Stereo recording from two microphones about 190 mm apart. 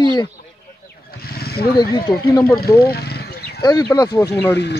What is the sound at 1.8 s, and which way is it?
Speech, 20° left (ahead or behind).